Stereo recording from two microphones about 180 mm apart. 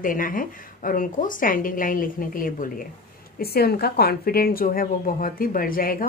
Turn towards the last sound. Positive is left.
turn(degrees=50)  # may be behind; listen again after turning